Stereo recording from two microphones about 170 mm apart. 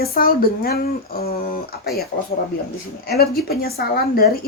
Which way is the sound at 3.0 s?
65° left (ahead or behind).